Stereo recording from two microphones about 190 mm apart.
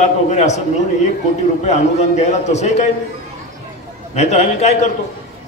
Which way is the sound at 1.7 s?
35° left (ahead or behind).